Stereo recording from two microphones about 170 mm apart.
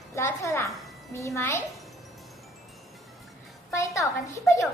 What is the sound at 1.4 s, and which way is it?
Speech, 15° left (ahead or behind).